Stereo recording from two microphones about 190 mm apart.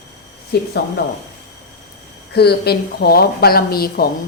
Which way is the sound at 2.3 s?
55° left (ahead or behind).